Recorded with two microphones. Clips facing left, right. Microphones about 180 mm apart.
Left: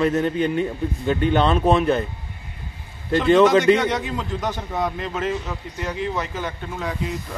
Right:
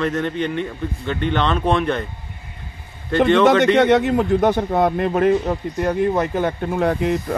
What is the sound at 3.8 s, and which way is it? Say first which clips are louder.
Speech: right 9 dB; 65° right (ahead or behind).